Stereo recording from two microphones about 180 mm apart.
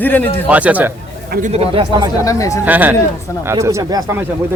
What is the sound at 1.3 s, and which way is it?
Speech, 45° right (ahead or behind).